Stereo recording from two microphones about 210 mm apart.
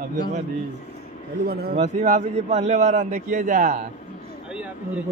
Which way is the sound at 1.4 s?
50° right (ahead or behind).